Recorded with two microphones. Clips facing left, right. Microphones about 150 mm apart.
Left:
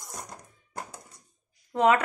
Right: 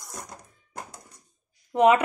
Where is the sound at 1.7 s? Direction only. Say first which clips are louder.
Right 3 dB; 15° right (ahead or behind).